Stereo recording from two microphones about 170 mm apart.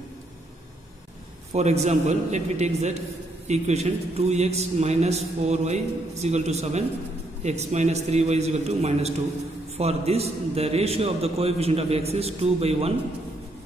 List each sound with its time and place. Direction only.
1.5 s a man's voice: 40° right (ahead or behind)